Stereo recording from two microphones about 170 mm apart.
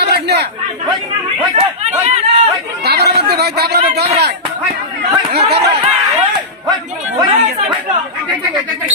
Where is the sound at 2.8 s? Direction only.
70° right (ahead or behind).